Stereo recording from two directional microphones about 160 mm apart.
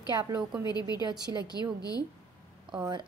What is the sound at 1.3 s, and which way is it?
Speech, 25° left (ahead or behind).